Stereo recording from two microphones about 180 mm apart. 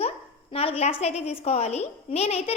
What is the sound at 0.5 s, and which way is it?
A woman's voice, 35° left (ahead or behind).